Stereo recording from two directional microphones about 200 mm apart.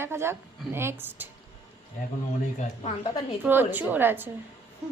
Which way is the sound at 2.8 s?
25° left (ahead or behind).